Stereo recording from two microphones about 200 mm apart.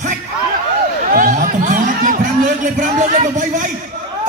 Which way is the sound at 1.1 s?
40° right (ahead or behind).